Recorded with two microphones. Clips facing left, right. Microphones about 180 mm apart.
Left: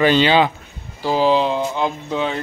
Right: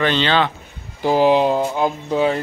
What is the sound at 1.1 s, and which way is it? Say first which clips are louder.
Speech: right 2 dB; 55° right (ahead or behind).